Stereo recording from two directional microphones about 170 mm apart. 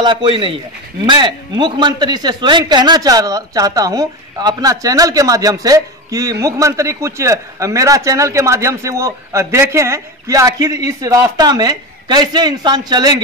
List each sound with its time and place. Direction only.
0.0 s a man's voice: 30° right (ahead or behind)